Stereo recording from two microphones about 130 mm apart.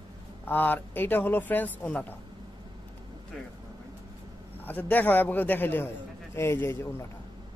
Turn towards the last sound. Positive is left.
turn(degrees=20)  # may be behind; listen again after turning